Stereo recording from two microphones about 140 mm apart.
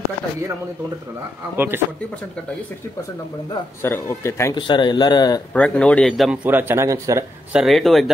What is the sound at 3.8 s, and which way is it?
Speech, 15° left (ahead or behind).